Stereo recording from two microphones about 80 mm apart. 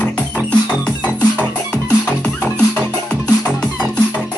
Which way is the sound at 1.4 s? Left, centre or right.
Centre.